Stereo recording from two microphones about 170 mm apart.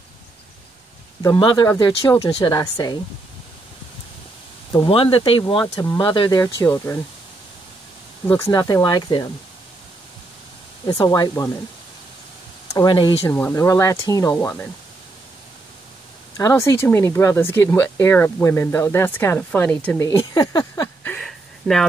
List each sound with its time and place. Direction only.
1.2 s speech: 25° left (ahead or behind)
4.7 s speech: 30° left (ahead or behind); by 7.0 s 15° left (ahead or behind)
8.3 s speech: 20° left (ahead or behind)
10.9 s speech: 20° left (ahead or behind)
12.7 s speech: 25° left (ahead or behind)
13.3 s speech: 15° left (ahead or behind)
16.3 s speech: 15° left (ahead or behind)
20.1 s a sound: 20° left (ahead or behind); by 21.8 s centre (ahead or behind)